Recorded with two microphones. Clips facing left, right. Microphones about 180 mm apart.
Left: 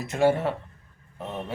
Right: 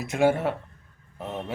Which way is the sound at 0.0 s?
10° right (ahead or behind).